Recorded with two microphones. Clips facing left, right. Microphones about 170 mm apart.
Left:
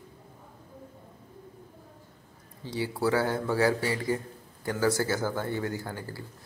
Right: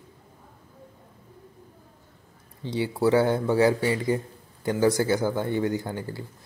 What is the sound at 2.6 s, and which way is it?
A man's voice, 25° right (ahead or behind).